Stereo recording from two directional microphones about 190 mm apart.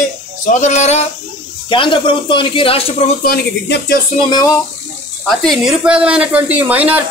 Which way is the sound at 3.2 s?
55° left (ahead or behind).